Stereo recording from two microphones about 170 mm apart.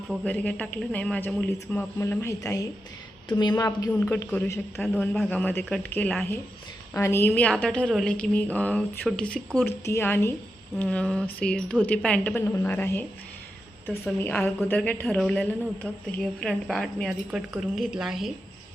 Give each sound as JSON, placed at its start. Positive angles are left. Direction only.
{"t": 0.3, "sound": "a woman's voice", "side_deg": 10}
{"t": 3.8, "sound": "a woman's voice", "side_deg": 15}
{"t": 4.8, "sound": "a woman's voice", "side_deg": 0}
{"t": 14.2, "sound": "a woman's voice", "side_deg": 10}